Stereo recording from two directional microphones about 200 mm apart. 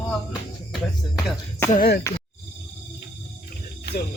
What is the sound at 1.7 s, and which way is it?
Speech, 45° left (ahead or behind).